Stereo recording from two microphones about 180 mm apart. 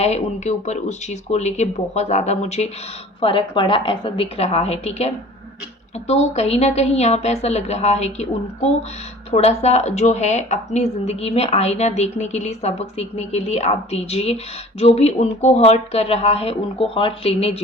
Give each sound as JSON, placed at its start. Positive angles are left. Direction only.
{"t": 0.0, "sound": "a woman's voice", "side_deg": 35}